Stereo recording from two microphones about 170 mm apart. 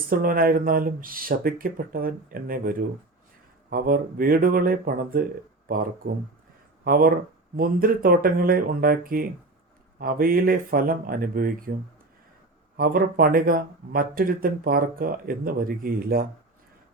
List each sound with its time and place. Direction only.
0.1 s speech: 55° right (ahead or behind)
12.7 s speech: 60° right (ahead or behind)